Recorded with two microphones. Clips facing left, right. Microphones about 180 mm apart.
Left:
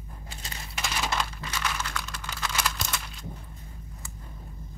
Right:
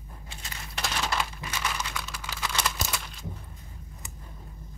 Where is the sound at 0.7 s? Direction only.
5° left (ahead or behind).